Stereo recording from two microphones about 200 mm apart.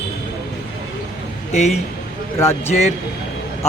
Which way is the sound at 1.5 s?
35° left (ahead or behind).